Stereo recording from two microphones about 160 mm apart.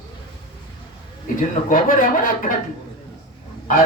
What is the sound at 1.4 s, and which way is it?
Speech, 55° left (ahead or behind).